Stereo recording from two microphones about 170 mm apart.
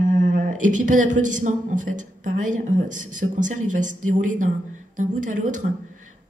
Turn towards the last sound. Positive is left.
turn(degrees=-50)  # may be behind; listen again after turning